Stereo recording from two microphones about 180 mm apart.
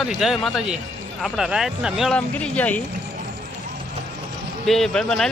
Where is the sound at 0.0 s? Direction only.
Centre (ahead or behind).